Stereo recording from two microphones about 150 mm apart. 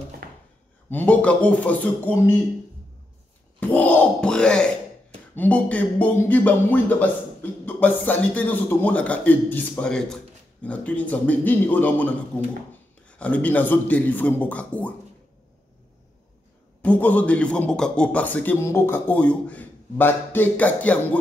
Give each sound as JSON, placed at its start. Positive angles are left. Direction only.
{"t": 0.2, "sound": "a sound", "side_deg": -75}
{"t": 0.8, "sound": "a man's voice", "side_deg": 10}
{"t": 3.5, "sound": "a man's voice", "side_deg": 10}
{"t": 13.2, "sound": "a man's voice", "side_deg": 10}
{"t": 16.8, "sound": "a man's voice", "side_deg": 10}